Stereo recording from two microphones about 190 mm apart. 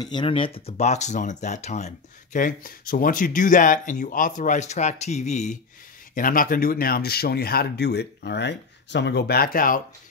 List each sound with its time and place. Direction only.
0.0 s speech: 25° left (ahead or behind); by 9.8 s 50° left (ahead or behind)